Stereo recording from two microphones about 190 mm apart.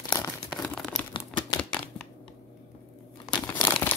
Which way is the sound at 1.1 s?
25° left (ahead or behind).